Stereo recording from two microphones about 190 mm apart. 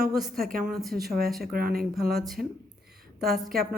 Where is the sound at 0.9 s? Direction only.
55° right (ahead or behind).